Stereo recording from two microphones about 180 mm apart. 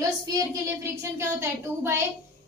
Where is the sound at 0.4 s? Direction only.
15° right (ahead or behind).